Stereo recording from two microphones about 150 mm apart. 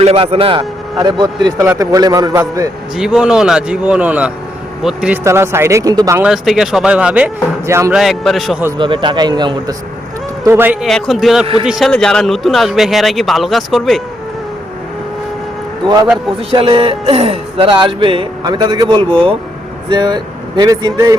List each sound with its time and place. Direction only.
0.0 s speech: 40° right (ahead or behind); by 2.4 s 25° right (ahead or behind)
3.0 s speech: 5° right (ahead or behind)
5.2 s speech: 15° right (ahead or behind)
6.2 s speech: centre (ahead or behind)
7.9 s speech: centre (ahead or behind)
8.8 s speech: 30° right (ahead or behind)
10.4 s speech: 15° right (ahead or behind)
10.8 s speech: centre (ahead or behind)
16.5 s speech: 35° right (ahead or behind)